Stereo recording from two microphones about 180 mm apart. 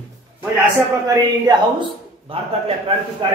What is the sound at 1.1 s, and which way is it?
A man's voice, 25° right (ahead or behind).